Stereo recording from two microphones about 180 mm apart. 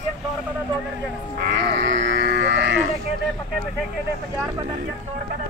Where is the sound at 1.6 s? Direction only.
85° right.